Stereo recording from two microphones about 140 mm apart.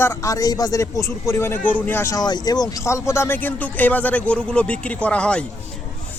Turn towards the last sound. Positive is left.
turn(degrees=10)  # may be behind; listen again after turning